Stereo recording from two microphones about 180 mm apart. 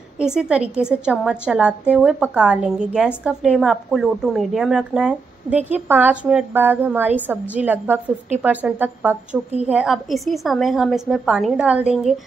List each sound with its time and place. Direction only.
0.2 s a woman's voice: 5° right (ahead or behind)